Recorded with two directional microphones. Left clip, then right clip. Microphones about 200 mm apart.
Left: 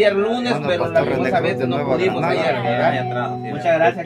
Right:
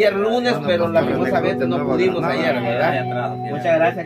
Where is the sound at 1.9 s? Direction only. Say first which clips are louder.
Left 1 dB; 30° left (ahead or behind).